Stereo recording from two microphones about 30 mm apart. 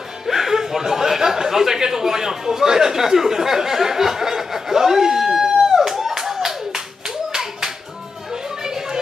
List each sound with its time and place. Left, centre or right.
0.3 s speech: centre
5.8 s clapping: centre
8.6 s music: centre